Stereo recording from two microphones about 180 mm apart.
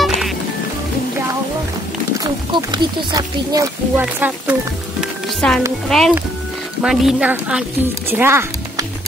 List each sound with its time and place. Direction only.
2.1 s speech: 25° right (ahead or behind)
4.0 s speech: 10° right (ahead or behind)
5.4 s a woman's voice: 5° left (ahead or behind); by 8.8 s 15° right (ahead or behind)